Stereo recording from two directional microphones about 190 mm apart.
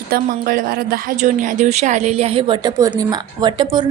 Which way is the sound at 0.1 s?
50° right (ahead or behind).